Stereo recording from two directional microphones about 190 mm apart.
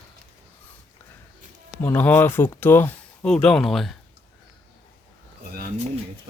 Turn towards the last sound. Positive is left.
turn(degrees=-50)  # may be behind; listen again after turning